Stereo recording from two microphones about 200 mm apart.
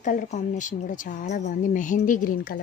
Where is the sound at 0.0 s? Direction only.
40° left (ahead or behind).